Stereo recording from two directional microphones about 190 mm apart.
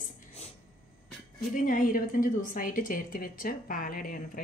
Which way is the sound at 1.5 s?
45° left (ahead or behind).